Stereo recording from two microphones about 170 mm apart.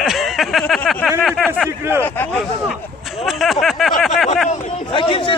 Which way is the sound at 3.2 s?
Centre (ahead or behind).